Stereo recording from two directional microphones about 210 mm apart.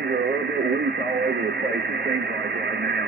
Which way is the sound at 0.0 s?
50° right (ahead or behind).